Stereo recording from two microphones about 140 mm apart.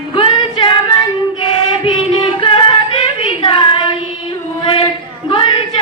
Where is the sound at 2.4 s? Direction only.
35° left (ahead or behind).